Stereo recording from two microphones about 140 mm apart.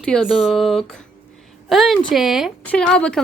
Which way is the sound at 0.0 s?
Centre (ahead or behind).